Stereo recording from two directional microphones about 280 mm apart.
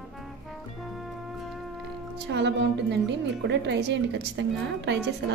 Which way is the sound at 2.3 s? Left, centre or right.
Right.